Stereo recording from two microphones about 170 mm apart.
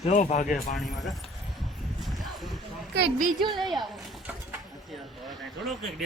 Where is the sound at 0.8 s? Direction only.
Centre (ahead or behind).